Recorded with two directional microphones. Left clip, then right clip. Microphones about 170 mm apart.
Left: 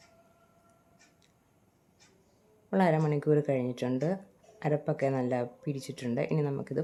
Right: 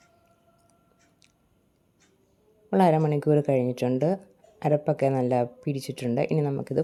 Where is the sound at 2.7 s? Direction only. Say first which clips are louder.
Right 6 dB; 30° right (ahead or behind).